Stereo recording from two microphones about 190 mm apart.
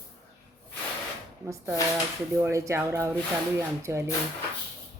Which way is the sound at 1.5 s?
15° right (ahead or behind).